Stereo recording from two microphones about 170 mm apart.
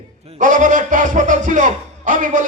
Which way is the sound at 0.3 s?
50° right (ahead or behind).